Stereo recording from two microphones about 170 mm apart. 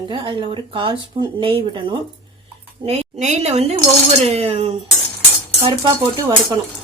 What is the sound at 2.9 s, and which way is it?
A woman's voice, 40° right (ahead or behind).